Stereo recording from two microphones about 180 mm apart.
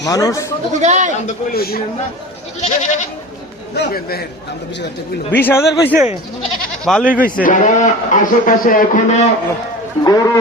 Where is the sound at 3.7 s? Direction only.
60° left (ahead or behind).